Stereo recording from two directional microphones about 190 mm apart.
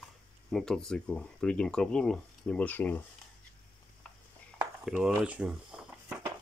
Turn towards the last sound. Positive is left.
turn(degrees=-5)  # may be behind; listen again after turning